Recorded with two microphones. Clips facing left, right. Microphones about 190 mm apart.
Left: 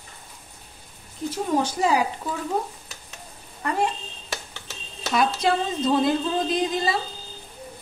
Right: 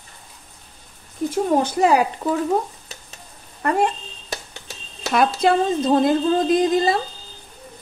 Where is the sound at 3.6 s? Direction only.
55° right (ahead or behind).